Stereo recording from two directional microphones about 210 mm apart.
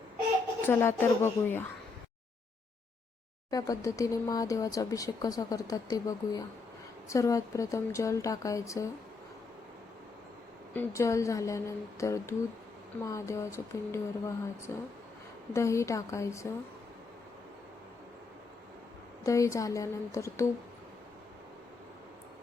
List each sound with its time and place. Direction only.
0.6 s speech: 10° left (ahead or behind)
3.5 s speech: 15° left (ahead or behind)
10.8 s speech: 15° left (ahead or behind)
19.2 s speech: 15° left (ahead or behind)